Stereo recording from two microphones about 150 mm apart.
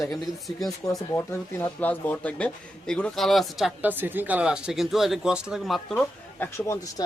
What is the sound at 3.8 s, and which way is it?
Speech, 10° right (ahead or behind).